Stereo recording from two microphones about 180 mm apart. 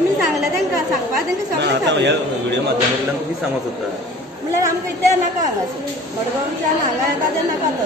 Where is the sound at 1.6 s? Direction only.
75° right (ahead or behind).